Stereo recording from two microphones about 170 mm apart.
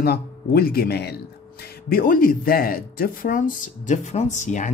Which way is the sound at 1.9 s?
55° left (ahead or behind).